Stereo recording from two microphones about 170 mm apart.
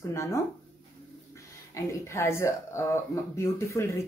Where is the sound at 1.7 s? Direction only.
15° left (ahead or behind).